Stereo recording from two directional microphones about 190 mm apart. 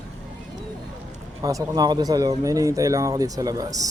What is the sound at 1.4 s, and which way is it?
Speech, 20° right (ahead or behind).